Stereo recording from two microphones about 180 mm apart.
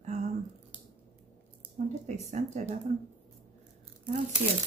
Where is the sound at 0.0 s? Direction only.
40° right (ahead or behind).